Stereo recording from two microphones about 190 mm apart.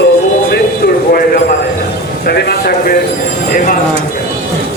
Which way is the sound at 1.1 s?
45° left (ahead or behind).